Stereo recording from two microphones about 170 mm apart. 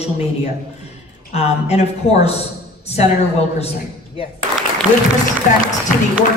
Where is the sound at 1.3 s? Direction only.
40° left (ahead or behind).